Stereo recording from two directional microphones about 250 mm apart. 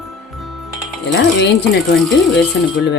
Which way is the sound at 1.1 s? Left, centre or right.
Left.